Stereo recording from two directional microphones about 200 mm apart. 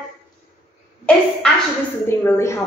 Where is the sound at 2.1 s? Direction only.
15° left (ahead or behind).